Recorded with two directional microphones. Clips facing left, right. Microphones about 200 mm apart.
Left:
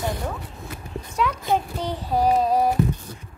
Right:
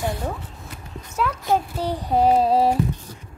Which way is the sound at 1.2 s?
Centre (ahead or behind).